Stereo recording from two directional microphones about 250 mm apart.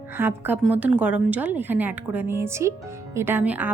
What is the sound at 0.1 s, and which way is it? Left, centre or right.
A woman's voice, centre.